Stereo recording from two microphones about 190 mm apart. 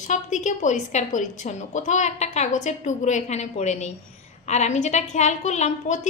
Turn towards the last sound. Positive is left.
turn(degrees=40)  # may be behind; listen again after turning